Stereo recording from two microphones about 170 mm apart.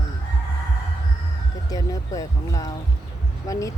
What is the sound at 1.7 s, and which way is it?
Speech, 20° left (ahead or behind).